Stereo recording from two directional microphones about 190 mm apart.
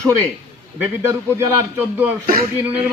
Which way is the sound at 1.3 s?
10° right (ahead or behind).